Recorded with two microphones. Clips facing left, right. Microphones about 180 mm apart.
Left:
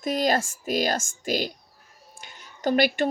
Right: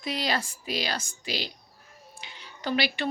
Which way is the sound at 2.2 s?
50° left (ahead or behind).